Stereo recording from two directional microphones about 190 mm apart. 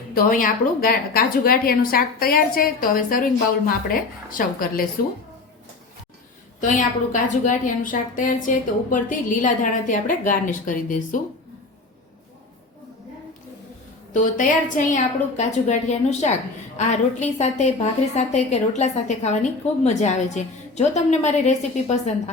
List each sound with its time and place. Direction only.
0.1 s a woman's voice: 45° left (ahead or behind)
6.6 s a woman's voice: 45° left (ahead or behind)
14.1 s a woman's voice: 45° left (ahead or behind)